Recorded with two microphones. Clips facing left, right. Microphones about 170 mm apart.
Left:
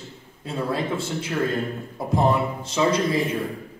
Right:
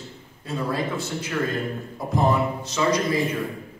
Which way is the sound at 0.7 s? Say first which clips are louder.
Left 1 dB; 30° left (ahead or behind).